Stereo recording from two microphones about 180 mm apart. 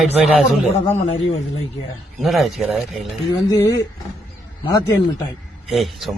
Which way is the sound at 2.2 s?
Centre (ahead or behind).